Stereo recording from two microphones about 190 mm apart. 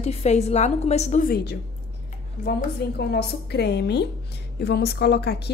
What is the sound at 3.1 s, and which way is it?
A woman's voice, 60° left (ahead or behind).